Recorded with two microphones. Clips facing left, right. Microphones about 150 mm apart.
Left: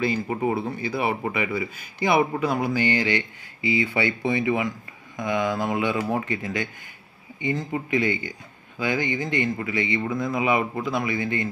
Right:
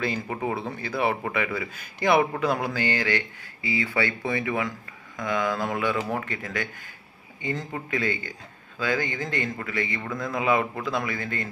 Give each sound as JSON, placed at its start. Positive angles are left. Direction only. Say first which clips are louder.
{"t": 0.0, "sound": "speech", "louder": "left 4 dB", "side_deg": 5}